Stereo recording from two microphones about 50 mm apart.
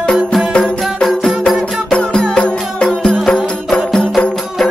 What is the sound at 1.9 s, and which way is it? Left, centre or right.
Music, centre.